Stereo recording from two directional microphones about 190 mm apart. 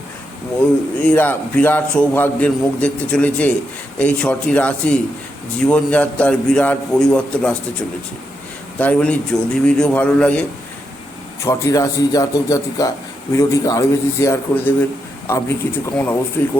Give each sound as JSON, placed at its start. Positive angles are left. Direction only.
{"t": 1.0, "sound": "a man's voice", "side_deg": 10}
{"t": 11.4, "sound": "a man's voice", "side_deg": 15}